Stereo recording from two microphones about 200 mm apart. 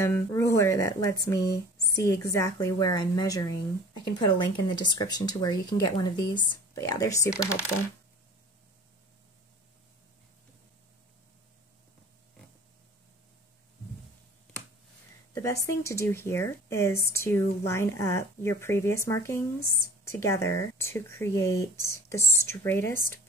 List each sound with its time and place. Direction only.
0.0 s speech: 15° left (ahead or behind)
15.3 s speech: 15° left (ahead or behind)